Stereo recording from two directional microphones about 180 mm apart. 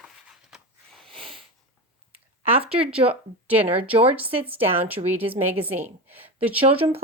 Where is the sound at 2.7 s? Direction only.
30° right (ahead or behind).